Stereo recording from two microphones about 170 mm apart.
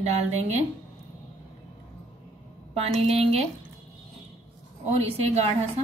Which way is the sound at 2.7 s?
35° right (ahead or behind).